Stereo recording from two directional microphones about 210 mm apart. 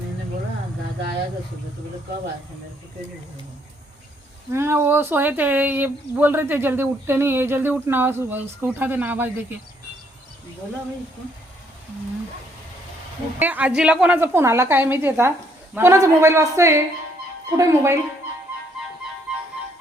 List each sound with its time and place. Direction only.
4.5 s speech: 10° right (ahead or behind)
13.4 s speech: 5° right (ahead or behind)
19.3 s music: 5° right (ahead or behind)